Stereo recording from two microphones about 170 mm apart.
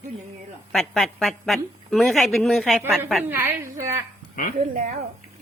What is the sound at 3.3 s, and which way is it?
Speech, 15° right (ahead or behind).